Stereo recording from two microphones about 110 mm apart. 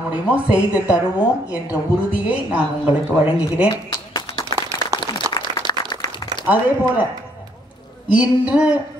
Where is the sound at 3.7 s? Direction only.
35° left (ahead or behind).